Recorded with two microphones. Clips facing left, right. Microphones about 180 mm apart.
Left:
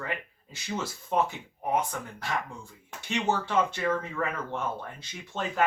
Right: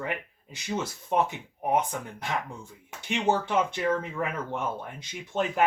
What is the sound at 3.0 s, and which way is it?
Speech, 15° right (ahead or behind).